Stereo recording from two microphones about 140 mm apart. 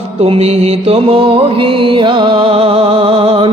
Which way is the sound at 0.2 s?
45° right (ahead or behind).